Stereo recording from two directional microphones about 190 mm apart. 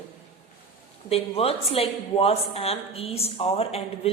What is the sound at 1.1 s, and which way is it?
Speech, 30° left (ahead or behind).